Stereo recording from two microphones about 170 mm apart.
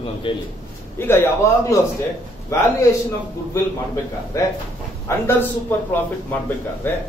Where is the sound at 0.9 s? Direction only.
15° left (ahead or behind).